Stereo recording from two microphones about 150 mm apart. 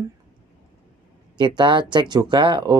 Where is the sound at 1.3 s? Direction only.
30° right (ahead or behind).